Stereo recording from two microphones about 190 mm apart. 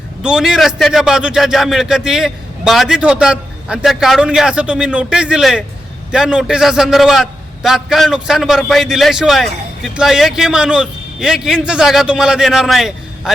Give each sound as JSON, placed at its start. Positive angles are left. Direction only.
{"t": 0.2, "sound": "a man's voice", "side_deg": -5}